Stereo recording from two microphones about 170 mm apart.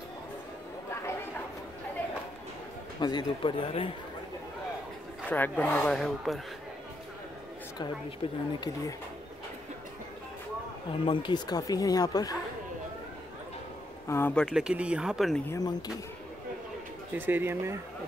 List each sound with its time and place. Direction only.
3.0 s speech: 25° left (ahead or behind)
5.3 s speech: 10° left (ahead or behind)
8.2 s speech: 35° left (ahead or behind)
8.5 s speech: 20° left (ahead or behind)
10.9 s speech: 30° left (ahead or behind)
14.0 s speech: 15° left (ahead or behind)
15.4 s speech: 20° left (ahead or behind)
17.1 s speech: 10° right (ahead or behind)